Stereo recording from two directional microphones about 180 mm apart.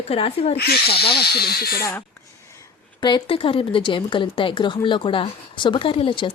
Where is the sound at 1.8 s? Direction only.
10° left (ahead or behind).